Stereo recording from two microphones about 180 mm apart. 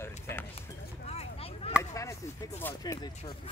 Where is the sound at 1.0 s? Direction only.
35° left (ahead or behind).